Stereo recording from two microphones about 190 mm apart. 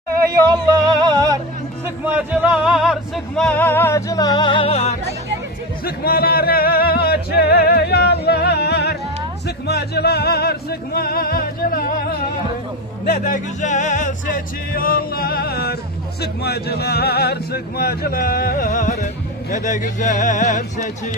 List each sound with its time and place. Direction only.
0.3 s music: 20° right (ahead or behind)
1.8 s music: 10° right (ahead or behind); by 4.9 s 30° left (ahead or behind)
5.8 s music: 50° left (ahead or behind)
13.1 s speech: 45° left (ahead or behind)